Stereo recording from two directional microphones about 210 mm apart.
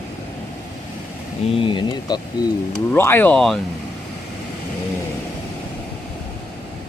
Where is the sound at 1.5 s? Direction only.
25° left (ahead or behind).